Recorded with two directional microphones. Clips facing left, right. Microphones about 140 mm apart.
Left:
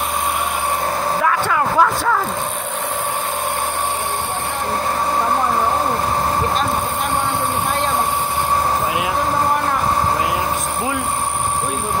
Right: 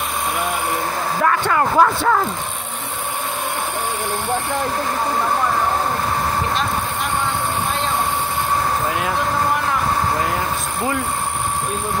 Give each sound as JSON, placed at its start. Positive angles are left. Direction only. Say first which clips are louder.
{"t": 1.2, "sound": "vehicle", "louder": "right 3 dB", "side_deg": 0}